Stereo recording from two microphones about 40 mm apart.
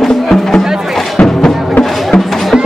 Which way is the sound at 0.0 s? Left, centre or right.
Centre.